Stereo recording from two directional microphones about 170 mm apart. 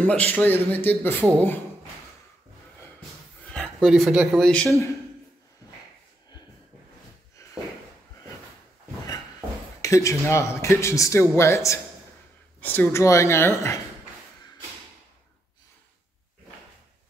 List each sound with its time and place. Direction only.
0.2 s speech: 10° left (ahead or behind)
3.4 s speech: 5° left (ahead or behind)
9.8 s speech: 20° left (ahead or behind)